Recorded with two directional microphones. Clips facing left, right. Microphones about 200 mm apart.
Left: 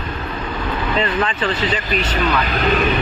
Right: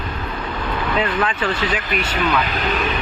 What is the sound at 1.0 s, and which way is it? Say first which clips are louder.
Speech: left 1 dB; 5° right (ahead or behind).